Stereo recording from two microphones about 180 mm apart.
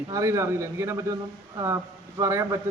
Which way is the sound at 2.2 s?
15° right (ahead or behind).